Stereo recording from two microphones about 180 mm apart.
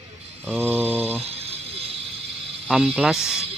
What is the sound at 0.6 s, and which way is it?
Mantra, 10° right (ahead or behind).